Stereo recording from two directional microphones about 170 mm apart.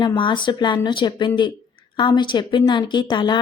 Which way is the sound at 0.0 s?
25° left (ahead or behind).